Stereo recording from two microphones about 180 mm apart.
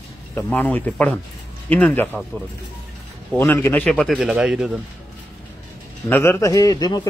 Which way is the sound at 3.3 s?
15° left (ahead or behind).